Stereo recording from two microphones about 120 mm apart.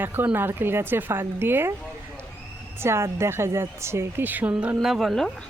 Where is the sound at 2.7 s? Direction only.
20° right (ahead or behind); by 5.5 s 5° left (ahead or behind).